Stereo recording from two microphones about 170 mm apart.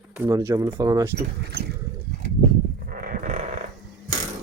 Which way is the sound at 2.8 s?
55° right (ahead or behind).